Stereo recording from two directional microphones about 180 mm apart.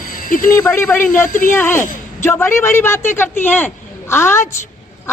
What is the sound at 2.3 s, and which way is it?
A woman's voice, 10° left (ahead or behind).